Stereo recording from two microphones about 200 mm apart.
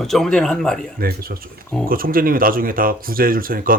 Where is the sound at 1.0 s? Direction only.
50° right (ahead or behind).